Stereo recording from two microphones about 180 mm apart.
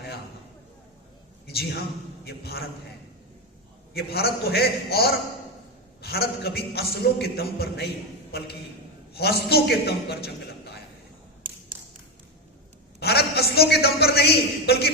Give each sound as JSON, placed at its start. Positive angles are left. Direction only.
{"t": 1.5, "sound": "a man's voice", "side_deg": 60}
{"t": 3.9, "sound": "a man's voice", "side_deg": 60}
{"t": 9.1, "sound": "a man's voice", "side_deg": 60}
{"t": 13.0, "sound": "a man's voice", "side_deg": 60}